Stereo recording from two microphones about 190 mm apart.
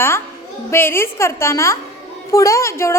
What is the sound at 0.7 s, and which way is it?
A woman's voice, 10° left (ahead or behind).